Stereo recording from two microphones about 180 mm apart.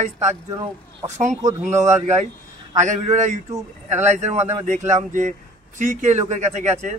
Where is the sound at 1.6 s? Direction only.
40° right (ahead or behind).